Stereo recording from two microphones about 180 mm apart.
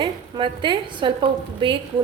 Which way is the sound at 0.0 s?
25° right (ahead or behind).